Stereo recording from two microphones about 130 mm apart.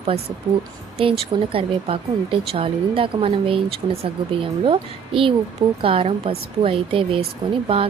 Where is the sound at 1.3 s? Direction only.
45° right (ahead or behind).